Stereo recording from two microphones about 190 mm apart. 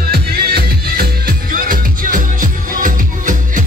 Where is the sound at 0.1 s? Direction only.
55° right (ahead or behind).